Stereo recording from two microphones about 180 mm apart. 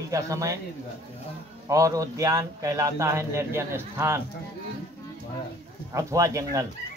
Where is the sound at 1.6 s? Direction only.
20° right (ahead or behind).